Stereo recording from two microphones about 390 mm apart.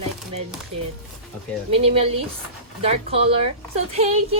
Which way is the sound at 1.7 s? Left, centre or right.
Centre.